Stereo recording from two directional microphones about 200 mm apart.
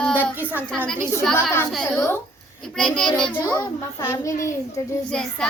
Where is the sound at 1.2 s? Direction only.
Centre (ahead or behind).